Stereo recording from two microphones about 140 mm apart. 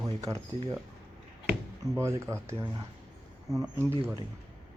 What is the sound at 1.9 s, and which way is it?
Speech, 20° right (ahead or behind).